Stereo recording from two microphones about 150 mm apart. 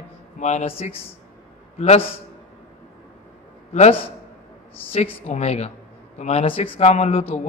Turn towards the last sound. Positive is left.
turn(degrees=45)  # may be behind; listen again after turning